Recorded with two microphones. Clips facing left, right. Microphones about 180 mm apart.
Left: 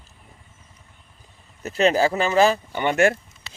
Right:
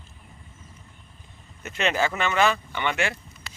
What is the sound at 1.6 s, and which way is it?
Speech, 35° left (ahead or behind).